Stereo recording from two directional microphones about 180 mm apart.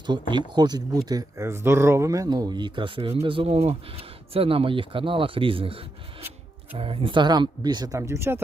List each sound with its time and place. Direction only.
0.1 s speech: 25° right (ahead or behind)